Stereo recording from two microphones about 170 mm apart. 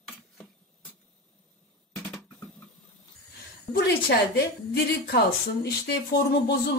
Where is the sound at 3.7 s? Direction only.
70° left (ahead or behind).